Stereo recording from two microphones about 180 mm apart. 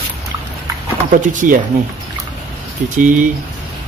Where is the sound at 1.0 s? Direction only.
45° right (ahead or behind).